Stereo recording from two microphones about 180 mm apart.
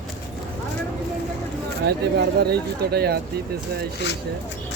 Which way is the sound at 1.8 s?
70° right (ahead or behind).